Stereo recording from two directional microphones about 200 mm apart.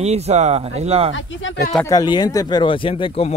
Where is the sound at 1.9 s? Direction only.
20° left (ahead or behind).